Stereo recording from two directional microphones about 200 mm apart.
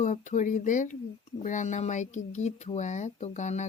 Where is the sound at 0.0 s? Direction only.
35° left (ahead or behind).